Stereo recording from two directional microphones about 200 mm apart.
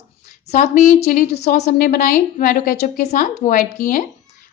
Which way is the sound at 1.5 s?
35° left (ahead or behind).